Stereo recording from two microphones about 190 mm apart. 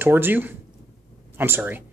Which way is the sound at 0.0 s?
10° right (ahead or behind).